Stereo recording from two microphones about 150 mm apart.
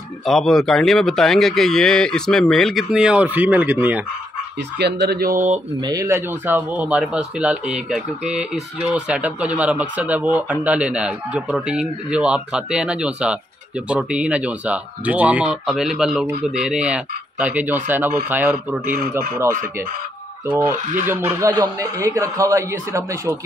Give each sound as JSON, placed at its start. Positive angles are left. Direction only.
{"t": 0.2, "sound": "speech", "side_deg": 0}
{"t": 4.7, "sound": "speech", "side_deg": -90}
{"t": 5.8, "sound": "a man's voice", "side_deg": -25}
{"t": 20.7, "sound": "speech", "side_deg": -55}
{"t": 21.1, "sound": "a man's voice", "side_deg": -15}